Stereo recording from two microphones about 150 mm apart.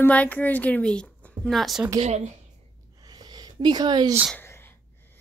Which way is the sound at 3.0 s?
25° right (ahead or behind).